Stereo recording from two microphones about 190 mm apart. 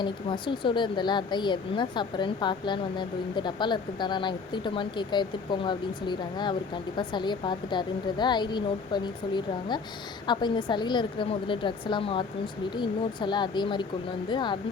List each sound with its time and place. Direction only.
0.0 s speech: 25° left (ahead or behind)